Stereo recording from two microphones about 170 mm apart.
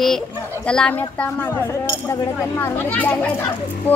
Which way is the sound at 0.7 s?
5° left (ahead or behind).